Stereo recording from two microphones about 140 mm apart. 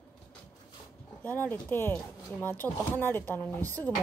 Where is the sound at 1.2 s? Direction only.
15° left (ahead or behind).